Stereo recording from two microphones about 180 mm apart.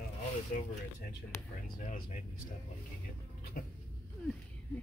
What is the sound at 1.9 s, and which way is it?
Speech, 45° left (ahead or behind).